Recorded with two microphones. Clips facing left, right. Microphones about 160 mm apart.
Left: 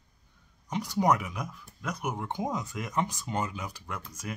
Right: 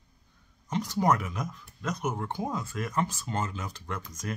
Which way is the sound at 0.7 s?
10° left (ahead or behind).